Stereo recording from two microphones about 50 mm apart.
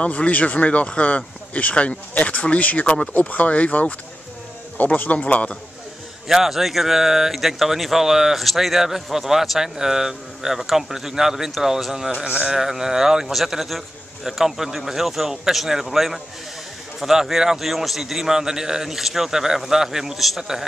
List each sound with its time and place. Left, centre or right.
0.0 s speech: left
6.2 s a man's voice: centre